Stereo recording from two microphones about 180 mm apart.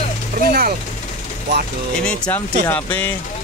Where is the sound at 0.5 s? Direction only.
60° right (ahead or behind).